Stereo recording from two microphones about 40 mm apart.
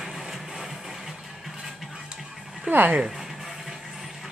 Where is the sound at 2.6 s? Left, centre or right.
Right.